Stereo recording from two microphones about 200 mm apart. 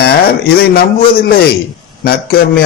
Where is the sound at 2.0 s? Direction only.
50° left (ahead or behind).